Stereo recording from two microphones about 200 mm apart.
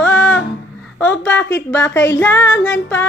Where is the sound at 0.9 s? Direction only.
10° left (ahead or behind).